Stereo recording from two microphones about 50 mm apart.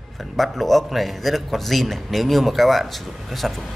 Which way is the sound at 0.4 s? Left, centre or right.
Centre.